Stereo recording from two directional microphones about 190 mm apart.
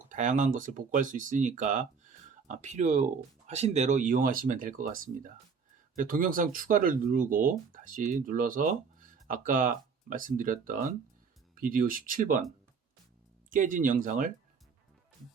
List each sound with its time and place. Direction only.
0.1 s speech: 40° right (ahead or behind)
13.5 s speech: 45° right (ahead or behind)